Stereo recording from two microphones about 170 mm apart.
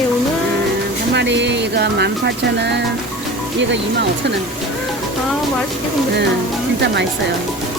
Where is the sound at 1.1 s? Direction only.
90° right.